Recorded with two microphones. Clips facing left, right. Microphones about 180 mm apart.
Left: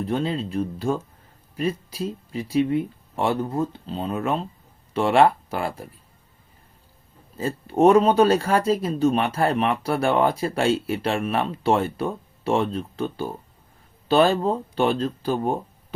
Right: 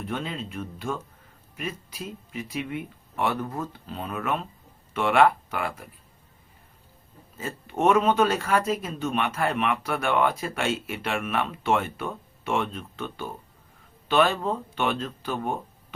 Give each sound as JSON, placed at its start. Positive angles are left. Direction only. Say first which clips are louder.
{"t": 0.0, "sound": "speech", "louder": "left 7 dB", "side_deg": 35}
{"t": 7.3, "sound": "speech", "louder": "left 8 dB", "side_deg": 35}